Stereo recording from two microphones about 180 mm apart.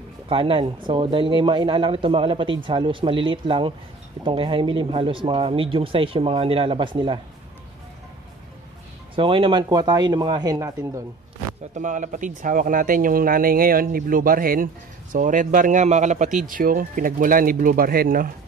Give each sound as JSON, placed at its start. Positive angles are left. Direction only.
{"t": 0.3, "sound": "speech", "side_deg": -30}
{"t": 9.1, "sound": "speech", "side_deg": -30}
{"t": 11.7, "sound": "speech", "side_deg": -45}